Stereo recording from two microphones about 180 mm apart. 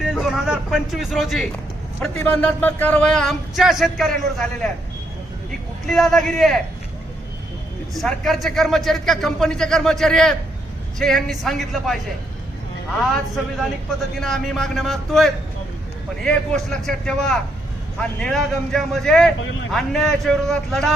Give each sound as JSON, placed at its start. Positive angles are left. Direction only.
{"t": 0.0, "sound": "a sound", "side_deg": 0}
{"t": 2.0, "sound": "a man's voice", "side_deg": 10}
{"t": 5.8, "sound": "a man's voice", "side_deg": 0}
{"t": 7.9, "sound": "a man's voice", "side_deg": 0}
{"t": 14.2, "sound": "a man's voice", "side_deg": 0}